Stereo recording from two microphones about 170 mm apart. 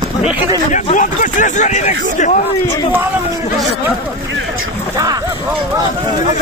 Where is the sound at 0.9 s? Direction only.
50° left (ahead or behind).